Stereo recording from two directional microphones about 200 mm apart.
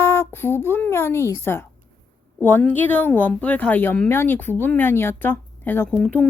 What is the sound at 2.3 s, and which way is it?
A woman's voice, 10° left (ahead or behind).